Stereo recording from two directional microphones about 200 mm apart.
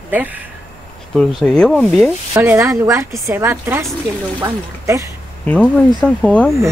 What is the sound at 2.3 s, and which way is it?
Speech, 10° right (ahead or behind).